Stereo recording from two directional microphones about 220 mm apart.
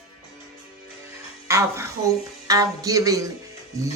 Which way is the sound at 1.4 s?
10° right (ahead or behind).